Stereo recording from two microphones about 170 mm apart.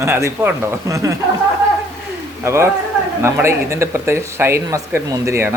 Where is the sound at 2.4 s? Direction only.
15° right (ahead or behind).